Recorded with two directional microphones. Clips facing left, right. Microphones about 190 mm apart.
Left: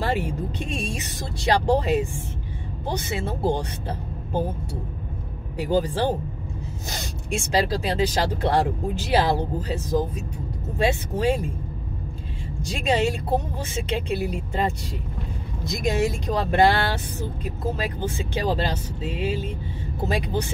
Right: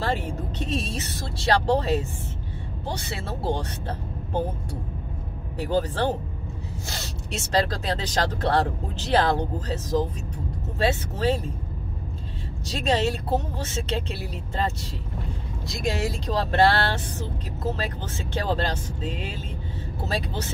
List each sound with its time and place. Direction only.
0.0 s speech: 10° left (ahead or behind)
3.2 s speech: 15° left (ahead or behind)
5.6 s speech: 10° left (ahead or behind)
12.6 s speech: 10° left (ahead or behind)
15.7 s speech: 20° left (ahead or behind)